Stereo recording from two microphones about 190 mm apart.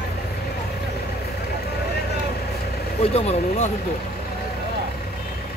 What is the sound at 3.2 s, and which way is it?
Speech, 35° left (ahead or behind).